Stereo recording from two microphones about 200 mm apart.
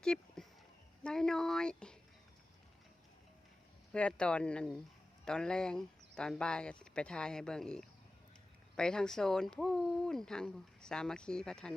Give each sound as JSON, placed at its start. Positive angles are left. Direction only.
{"t": 0.0, "sound": "speech", "side_deg": 5}
{"t": 3.9, "sound": "speech", "side_deg": 5}